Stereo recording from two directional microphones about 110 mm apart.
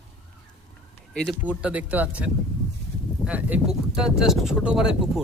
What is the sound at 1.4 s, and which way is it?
Speech, 10° right (ahead or behind).